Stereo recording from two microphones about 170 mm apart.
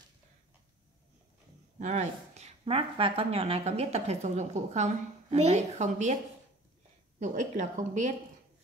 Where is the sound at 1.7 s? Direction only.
45° right (ahead or behind).